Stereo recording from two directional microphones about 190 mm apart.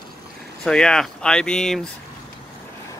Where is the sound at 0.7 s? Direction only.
5° left (ahead or behind).